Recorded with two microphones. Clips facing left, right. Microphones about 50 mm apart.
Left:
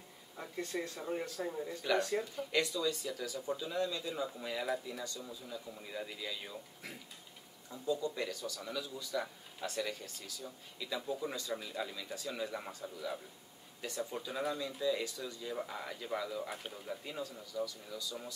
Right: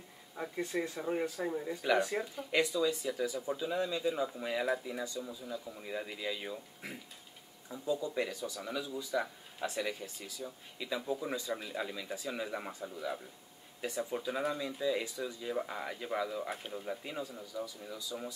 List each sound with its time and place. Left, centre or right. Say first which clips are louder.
0.4 s speech: right 4 dB; centre